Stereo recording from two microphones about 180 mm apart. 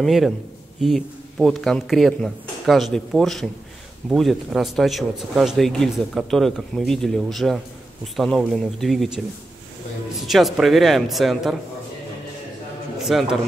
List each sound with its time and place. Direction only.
0.0 s speech: centre (ahead or behind)
10.2 s speech: centre (ahead or behind)
13.0 s speech: centre (ahead or behind)